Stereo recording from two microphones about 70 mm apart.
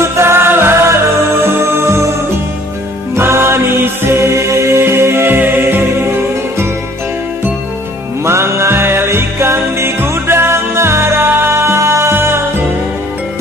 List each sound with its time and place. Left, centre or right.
0.0 s music: right
3.2 s music: right
8.3 s music: right